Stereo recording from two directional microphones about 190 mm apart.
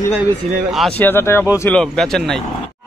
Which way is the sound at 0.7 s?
Centre (ahead or behind).